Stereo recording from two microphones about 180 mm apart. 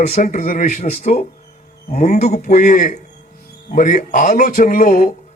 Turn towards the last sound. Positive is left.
turn(degrees=50)  # may be behind; listen again after turning